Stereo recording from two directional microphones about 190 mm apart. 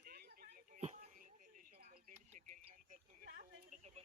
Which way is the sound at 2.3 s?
40° right (ahead or behind).